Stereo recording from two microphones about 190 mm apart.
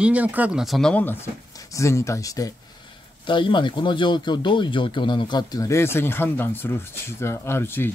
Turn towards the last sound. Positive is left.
turn(degrees=10)  # may be behind; listen again after turning